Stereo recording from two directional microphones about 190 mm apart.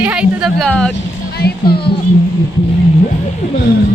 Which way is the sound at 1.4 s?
55° left (ahead or behind).